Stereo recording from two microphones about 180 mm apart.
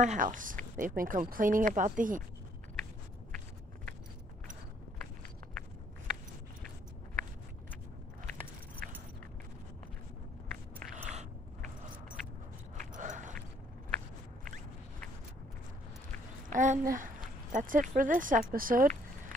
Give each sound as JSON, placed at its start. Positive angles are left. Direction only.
{"t": 0.0, "sound": "speech", "side_deg": -45}
{"t": 11.0, "sound": "biting", "side_deg": -40}
{"t": 12.9, "sound": "a sound", "side_deg": -45}
{"t": 16.4, "sound": "speech", "side_deg": -45}